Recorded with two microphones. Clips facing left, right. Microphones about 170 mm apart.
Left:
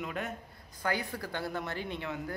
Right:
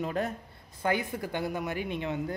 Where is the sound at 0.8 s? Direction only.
20° right (ahead or behind).